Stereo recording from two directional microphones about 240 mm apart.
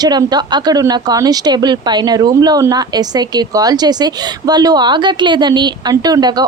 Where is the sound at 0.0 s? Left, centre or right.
Centre.